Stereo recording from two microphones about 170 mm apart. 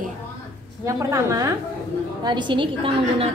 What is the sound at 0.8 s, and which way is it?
A woman's voice, 20° right (ahead or behind).